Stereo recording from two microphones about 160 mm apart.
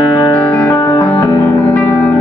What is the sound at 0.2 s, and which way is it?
Music, 20° left (ahead or behind).